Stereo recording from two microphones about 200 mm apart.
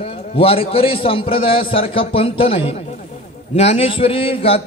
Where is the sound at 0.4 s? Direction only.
30° left (ahead or behind).